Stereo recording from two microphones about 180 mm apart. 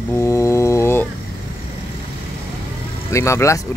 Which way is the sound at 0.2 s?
15° left (ahead or behind).